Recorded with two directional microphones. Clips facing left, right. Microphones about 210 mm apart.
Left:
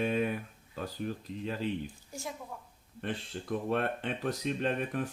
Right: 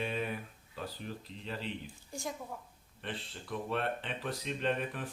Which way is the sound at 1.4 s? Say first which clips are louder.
Left 6 dB; 45° left (ahead or behind).